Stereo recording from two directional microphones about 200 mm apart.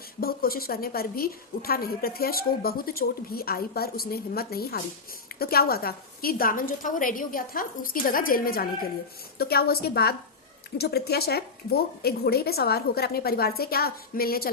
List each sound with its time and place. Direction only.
0.2 s a woman's voice: 50° left (ahead or behind)